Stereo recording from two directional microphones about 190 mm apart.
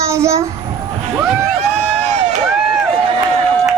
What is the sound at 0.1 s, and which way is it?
Speech, 15° right (ahead or behind).